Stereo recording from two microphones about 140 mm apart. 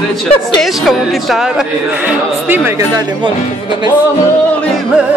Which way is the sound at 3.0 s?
30° right (ahead or behind).